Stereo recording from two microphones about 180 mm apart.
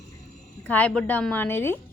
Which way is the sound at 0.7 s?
5° left (ahead or behind).